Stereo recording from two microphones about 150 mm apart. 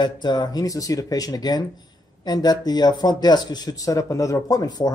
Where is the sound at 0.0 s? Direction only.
30° left (ahead or behind).